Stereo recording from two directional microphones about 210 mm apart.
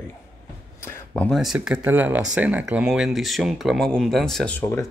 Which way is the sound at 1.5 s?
5° right (ahead or behind).